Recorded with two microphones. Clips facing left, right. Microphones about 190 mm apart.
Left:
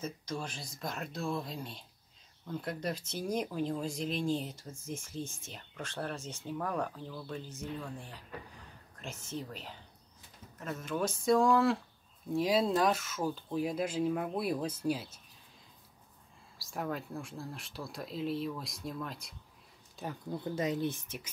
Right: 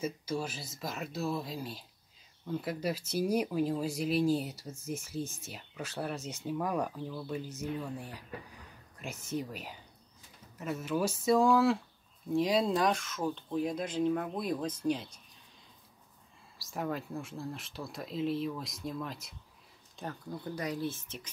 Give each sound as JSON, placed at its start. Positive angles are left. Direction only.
{"t": 0.0, "sound": "speech", "side_deg": -10}
{"t": 16.5, "sound": "speech", "side_deg": 0}
{"t": 20.5, "sound": "speech", "side_deg": 20}